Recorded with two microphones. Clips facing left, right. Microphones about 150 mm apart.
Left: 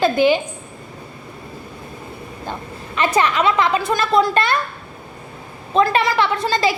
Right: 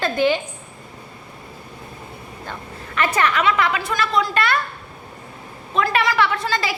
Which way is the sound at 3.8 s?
25° left (ahead or behind).